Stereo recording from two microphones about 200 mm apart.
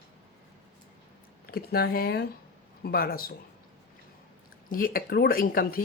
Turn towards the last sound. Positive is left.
turn(degrees=45)  # may be behind; listen again after turning